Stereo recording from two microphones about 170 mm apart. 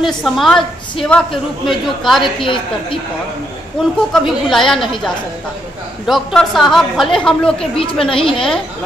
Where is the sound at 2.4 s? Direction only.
30° left (ahead or behind).